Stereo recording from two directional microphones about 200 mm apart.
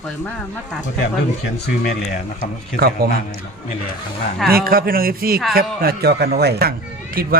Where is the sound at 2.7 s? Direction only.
50° right (ahead or behind).